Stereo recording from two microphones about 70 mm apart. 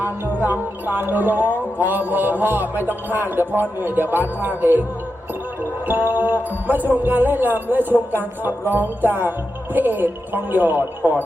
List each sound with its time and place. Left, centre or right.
0.0 s music: right
5.8 s music: right